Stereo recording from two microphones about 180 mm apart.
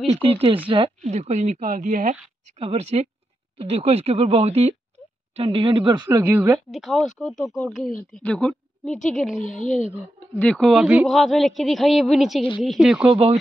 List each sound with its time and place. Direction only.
0.1 s speech: 30° right (ahead or behind); by 2.1 s 45° right (ahead or behind)
2.6 s speech: 35° right (ahead or behind); by 6.6 s 15° right (ahead or behind)
6.7 s a woman's voice: centre (ahead or behind)
9.5 s speech: 45° left (ahead or behind)
10.3 s a woman's voice: 5° left (ahead or behind)